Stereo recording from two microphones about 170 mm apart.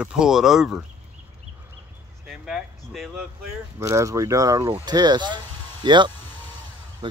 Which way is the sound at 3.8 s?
20° right (ahead or behind).